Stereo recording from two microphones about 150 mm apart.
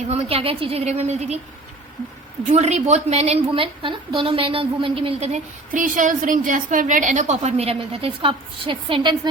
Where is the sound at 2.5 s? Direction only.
50° right (ahead or behind).